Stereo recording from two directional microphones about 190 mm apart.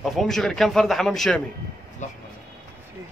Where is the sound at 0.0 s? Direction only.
Centre (ahead or behind).